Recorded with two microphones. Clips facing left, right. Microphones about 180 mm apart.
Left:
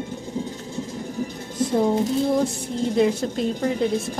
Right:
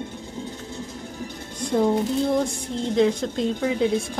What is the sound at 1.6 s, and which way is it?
Music, 5° left (ahead or behind).